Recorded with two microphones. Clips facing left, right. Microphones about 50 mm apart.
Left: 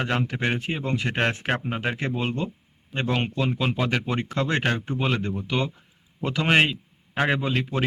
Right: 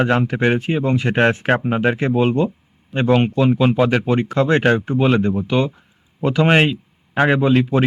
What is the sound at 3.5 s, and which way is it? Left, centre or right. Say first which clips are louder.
Speech: right 10 dB; centre.